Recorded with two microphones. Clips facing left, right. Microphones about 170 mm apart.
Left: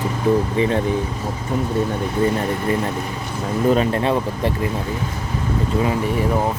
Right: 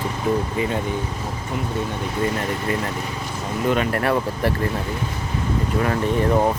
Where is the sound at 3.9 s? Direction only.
20° left (ahead or behind).